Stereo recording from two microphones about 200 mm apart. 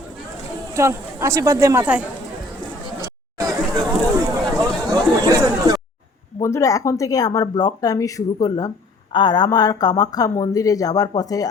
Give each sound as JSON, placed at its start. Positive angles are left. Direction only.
{"t": 0.7, "sound": "speech", "side_deg": -15}
{"t": 3.3, "sound": "chatter", "side_deg": -15}
{"t": 4.7, "sound": "a sound", "side_deg": 0}
{"t": 5.2, "sound": "chatter", "side_deg": -20}
{"t": 6.4, "sound": "speech", "side_deg": 15}